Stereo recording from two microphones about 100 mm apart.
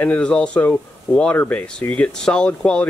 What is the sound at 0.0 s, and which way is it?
Speech, 10° left (ahead or behind).